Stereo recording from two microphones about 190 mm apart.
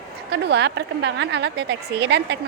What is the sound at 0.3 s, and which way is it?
A woman's voice, 60° right (ahead or behind).